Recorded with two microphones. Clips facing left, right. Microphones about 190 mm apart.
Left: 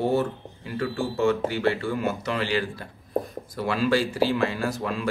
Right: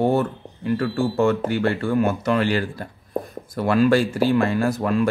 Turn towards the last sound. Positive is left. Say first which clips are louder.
# right 7 dB
turn(degrees=-50)  # may be behind; listen again after turning